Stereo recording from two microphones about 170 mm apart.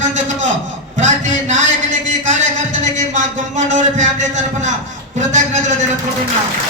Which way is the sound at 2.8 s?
45° right (ahead or behind).